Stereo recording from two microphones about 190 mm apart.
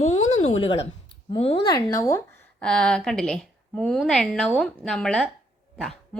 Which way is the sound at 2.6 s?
5° left (ahead or behind).